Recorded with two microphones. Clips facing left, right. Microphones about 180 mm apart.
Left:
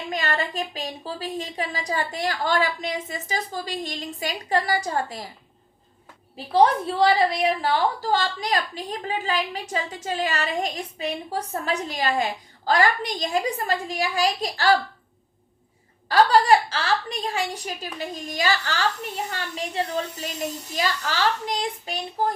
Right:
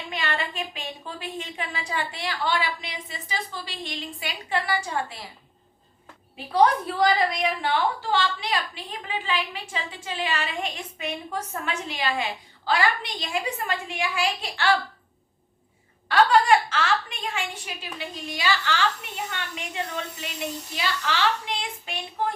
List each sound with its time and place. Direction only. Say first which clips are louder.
0.1 s a woman's voice: left 3 dB; 40° left (ahead or behind)
6.3 s a woman's voice: left 2 dB; 30° left (ahead or behind)
16.0 s a woman's voice: left 2 dB; 35° left (ahead or behind)